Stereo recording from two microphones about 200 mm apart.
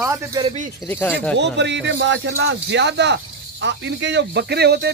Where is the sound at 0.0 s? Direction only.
15° right (ahead or behind).